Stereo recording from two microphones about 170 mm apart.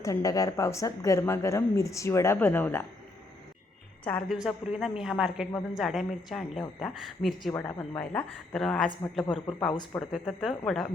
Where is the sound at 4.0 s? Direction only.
5° left (ahead or behind).